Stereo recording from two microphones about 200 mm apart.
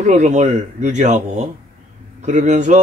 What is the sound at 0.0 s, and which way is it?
Speech, 35° right (ahead or behind).